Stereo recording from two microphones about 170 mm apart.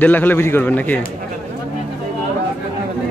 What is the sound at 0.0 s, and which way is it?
A man's voice, 10° left (ahead or behind).